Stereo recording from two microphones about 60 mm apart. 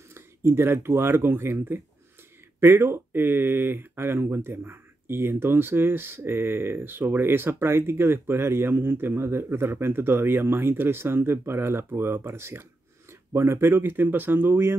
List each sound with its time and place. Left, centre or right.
0.1 s speech: right